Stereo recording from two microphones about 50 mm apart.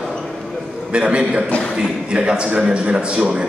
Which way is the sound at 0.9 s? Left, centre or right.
Centre.